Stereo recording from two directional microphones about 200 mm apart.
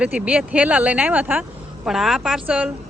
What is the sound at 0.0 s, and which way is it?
Speech, 5° right (ahead or behind).